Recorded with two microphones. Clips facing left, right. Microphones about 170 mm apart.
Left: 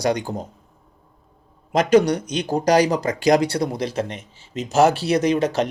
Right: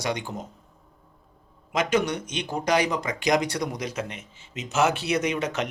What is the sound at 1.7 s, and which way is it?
Speech, 35° left (ahead or behind).